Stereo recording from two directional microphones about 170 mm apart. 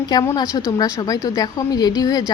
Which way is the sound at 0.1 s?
25° left (ahead or behind).